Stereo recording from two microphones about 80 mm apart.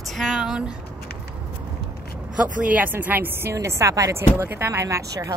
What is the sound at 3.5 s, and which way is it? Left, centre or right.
Speech, right.